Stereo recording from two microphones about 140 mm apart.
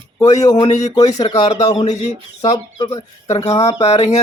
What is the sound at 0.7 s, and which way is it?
Speech, 55° left (ahead or behind).